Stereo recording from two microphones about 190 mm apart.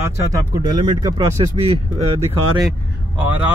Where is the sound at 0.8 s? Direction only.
20° right (ahead or behind).